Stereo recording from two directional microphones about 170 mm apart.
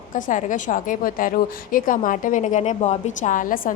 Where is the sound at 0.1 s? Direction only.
50° left (ahead or behind).